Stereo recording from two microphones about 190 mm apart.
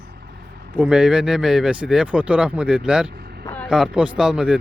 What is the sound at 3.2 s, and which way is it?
Vehicle, 55° right (ahead or behind).